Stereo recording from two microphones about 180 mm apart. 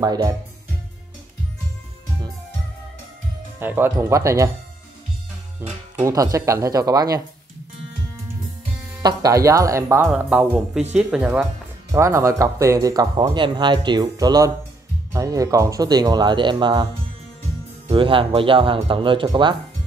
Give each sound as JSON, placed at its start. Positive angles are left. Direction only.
{"t": 0.0, "sound": "speech", "side_deg": -20}
{"t": 3.5, "sound": "speech", "side_deg": -10}
{"t": 5.6, "sound": "speech", "side_deg": -15}
{"t": 9.0, "sound": "speech", "side_deg": -20}
{"t": 11.9, "sound": "speech", "side_deg": -15}
{"t": 17.8, "sound": "speech", "side_deg": -30}